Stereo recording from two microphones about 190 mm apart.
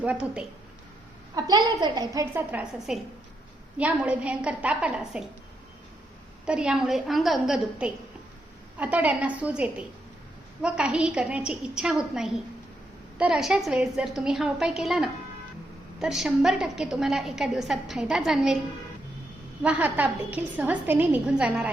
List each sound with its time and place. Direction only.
0.0 s a woman's voice: 5° right (ahead or behind)
1.4 s a woman's voice: 20° right (ahead or behind); by 5.2 s 5° right (ahead or behind)
6.4 s a woman's voice: 5° right (ahead or behind)
19.6 s a woman's voice: 5° right (ahead or behind)